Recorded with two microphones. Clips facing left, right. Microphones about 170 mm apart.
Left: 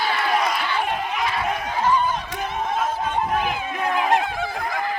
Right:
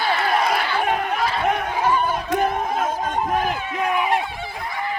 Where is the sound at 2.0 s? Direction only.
55° right (ahead or behind).